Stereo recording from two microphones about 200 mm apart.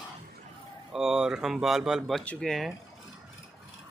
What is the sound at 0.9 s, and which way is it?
Speech, 5° right (ahead or behind).